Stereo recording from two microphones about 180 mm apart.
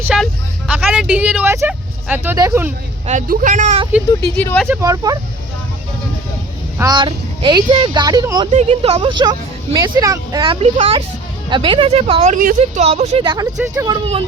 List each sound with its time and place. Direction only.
0.0 s a woman's voice: 5° right (ahead or behind)
3.1 s speech: 45° right (ahead or behind)
4.4 s speech: 10° left (ahead or behind)
4.7 s a woman's voice: 20° right (ahead or behind)
6.7 s a woman's voice: 20° right (ahead or behind)
8.5 s a woman's voice: 30° right (ahead or behind)
13.2 s a woman's voice: 25° right (ahead or behind)